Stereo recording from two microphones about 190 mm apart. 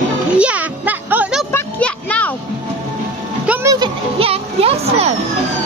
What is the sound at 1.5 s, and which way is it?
Music, 5° left (ahead or behind).